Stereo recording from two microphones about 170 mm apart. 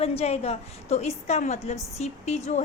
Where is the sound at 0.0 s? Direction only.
35° left (ahead or behind).